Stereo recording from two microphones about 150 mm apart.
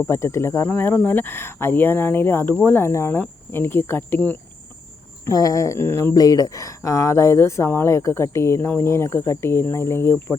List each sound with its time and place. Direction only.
0.0 s speech: 20° left (ahead or behind)
5.2 s speech: 25° left (ahead or behind)